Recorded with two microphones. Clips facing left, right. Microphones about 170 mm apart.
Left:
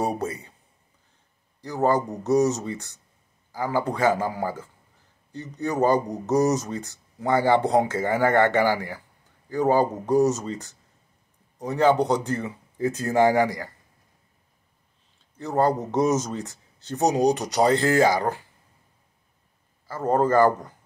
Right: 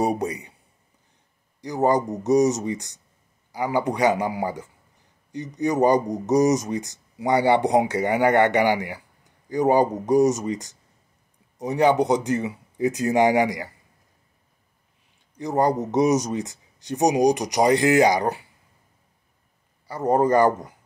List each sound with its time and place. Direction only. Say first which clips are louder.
0.0 s speech: right 3 dB; 15° right (ahead or behind)
1.6 s speech: right 2 dB; 15° right (ahead or behind)
15.3 s speech: right 1 dB; 15° right (ahead or behind)
19.9 s speech: right 2 dB; 15° right (ahead or behind)